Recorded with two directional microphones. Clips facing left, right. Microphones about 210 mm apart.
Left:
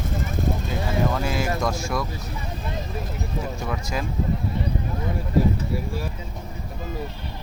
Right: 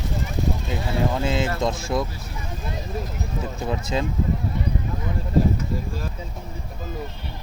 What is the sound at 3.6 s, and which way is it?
Speech, 25° right (ahead or behind).